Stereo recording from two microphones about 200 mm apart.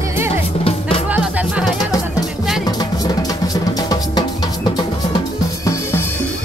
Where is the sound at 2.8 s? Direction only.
20° left (ahead or behind).